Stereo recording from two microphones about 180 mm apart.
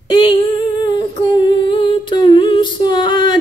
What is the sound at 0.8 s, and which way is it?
Humming, 25° left (ahead or behind).